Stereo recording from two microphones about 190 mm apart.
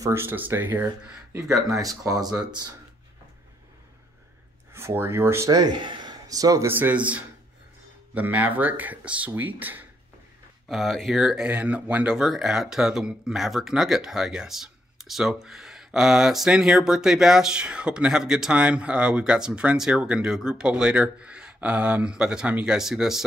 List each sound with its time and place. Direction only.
0.0 s speech: 15° right (ahead or behind)
4.7 s speech: 10° right (ahead or behind)